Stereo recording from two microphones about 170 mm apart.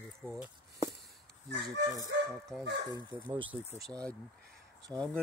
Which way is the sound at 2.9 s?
30° right (ahead or behind).